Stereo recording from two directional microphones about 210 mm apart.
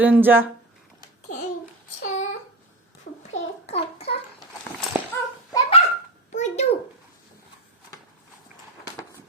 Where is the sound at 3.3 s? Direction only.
30° left (ahead or behind).